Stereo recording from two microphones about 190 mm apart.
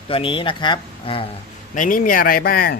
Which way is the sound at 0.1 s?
25° left (ahead or behind).